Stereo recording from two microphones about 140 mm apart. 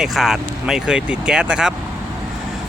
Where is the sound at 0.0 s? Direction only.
Centre (ahead or behind).